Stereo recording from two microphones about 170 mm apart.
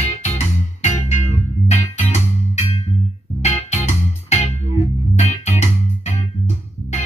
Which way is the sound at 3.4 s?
40° left (ahead or behind).